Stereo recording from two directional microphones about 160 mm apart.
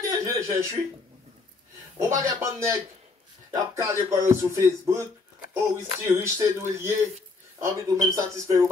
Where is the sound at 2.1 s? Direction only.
15° right (ahead or behind).